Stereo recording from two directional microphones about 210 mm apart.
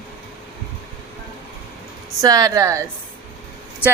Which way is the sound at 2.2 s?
15° right (ahead or behind).